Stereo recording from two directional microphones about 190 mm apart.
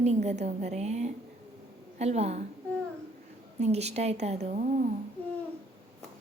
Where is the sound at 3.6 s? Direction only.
35° right (ahead or behind).